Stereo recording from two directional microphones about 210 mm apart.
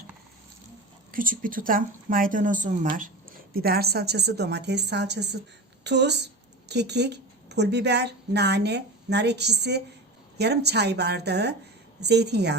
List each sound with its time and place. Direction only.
1.1 s a woman's voice: 40° right (ahead or behind)